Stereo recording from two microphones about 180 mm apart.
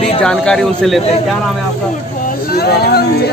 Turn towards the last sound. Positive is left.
turn(degrees=60)  # may be behind; listen again after turning